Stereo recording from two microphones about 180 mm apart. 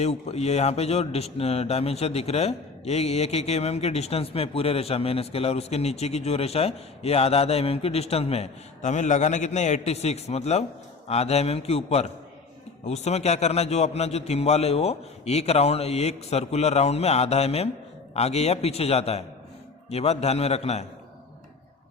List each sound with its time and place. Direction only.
0.0 s a man's voice: 35° left (ahead or behind)